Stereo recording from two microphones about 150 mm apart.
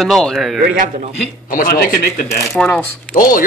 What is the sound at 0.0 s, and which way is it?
Speech, centre (ahead or behind).